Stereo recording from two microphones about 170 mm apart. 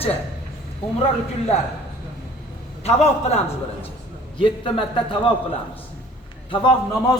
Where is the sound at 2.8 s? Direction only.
40° left (ahead or behind).